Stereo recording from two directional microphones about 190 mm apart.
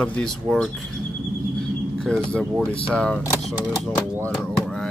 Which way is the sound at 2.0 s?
5° left (ahead or behind).